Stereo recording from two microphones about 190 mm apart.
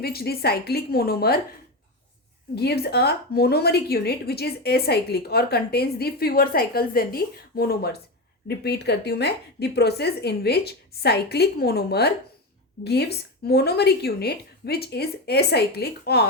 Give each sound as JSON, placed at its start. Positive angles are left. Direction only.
{"t": 0.0, "sound": "a woman's voice", "side_deg": 55}
{"t": 2.6, "sound": "a woman's voice", "side_deg": 55}